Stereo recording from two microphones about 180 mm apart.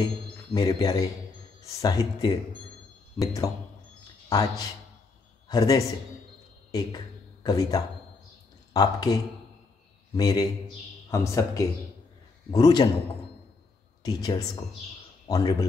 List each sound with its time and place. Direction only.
0.6 s speech: 20° left (ahead or behind)
14.0 s speech: 20° left (ahead or behind)